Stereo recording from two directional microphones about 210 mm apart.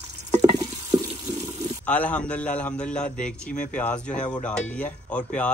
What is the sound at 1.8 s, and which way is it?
Speech, 5° left (ahead or behind).